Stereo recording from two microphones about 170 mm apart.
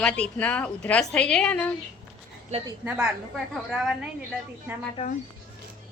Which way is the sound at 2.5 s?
40° right (ahead or behind).